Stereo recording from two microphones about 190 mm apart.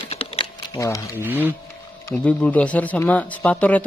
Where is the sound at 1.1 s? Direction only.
10° right (ahead or behind).